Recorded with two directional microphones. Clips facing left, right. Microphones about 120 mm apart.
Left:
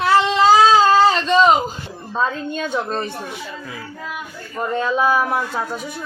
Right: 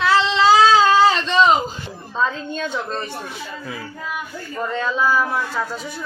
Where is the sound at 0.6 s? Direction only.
40° left (ahead or behind).